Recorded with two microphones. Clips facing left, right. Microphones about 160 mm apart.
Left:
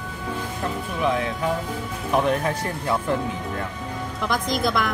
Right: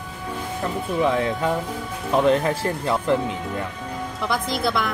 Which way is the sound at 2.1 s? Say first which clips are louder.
Right 3 dB; 25° right (ahead or behind).